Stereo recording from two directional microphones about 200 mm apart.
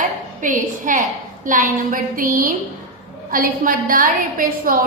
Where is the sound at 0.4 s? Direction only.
40° right (ahead or behind).